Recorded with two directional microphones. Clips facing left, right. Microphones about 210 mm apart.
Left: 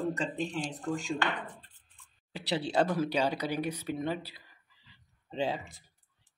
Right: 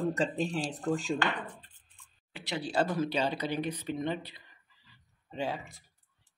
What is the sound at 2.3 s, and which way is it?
Speech, 35° left (ahead or behind).